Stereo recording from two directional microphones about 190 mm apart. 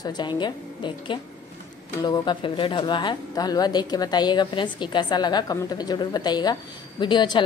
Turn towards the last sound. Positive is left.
turn(degrees=25)  # may be behind; listen again after turning